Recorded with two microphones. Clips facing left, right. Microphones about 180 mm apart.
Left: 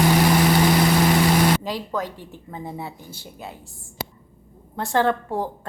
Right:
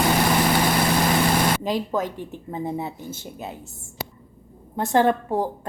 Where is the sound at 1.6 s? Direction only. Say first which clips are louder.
Right 3 dB; 20° right (ahead or behind).